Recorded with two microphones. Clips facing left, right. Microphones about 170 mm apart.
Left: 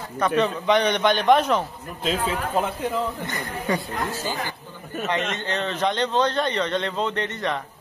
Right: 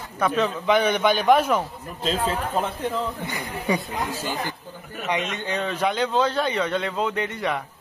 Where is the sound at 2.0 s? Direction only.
5° left (ahead or behind).